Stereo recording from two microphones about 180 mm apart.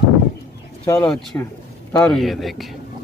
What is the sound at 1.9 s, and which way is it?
Speech, 5° left (ahead or behind).